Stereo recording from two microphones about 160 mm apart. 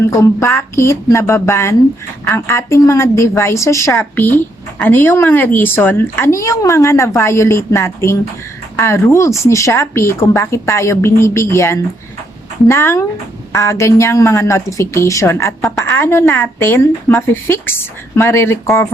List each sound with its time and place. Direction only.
0.1 s a woman's voice: 20° left (ahead or behind)